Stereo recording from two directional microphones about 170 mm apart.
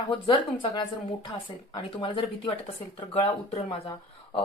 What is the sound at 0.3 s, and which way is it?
Speech, 30° left (ahead or behind).